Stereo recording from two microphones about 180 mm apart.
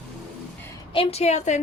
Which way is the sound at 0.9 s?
35° left (ahead or behind).